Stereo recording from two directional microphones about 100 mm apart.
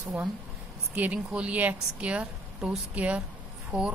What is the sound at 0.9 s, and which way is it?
A woman's voice, 15° right (ahead or behind).